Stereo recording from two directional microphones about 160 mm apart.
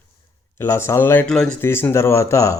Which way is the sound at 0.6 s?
15° left (ahead or behind).